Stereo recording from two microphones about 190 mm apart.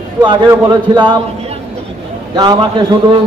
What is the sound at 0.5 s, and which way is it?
Speech, 25° right (ahead or behind).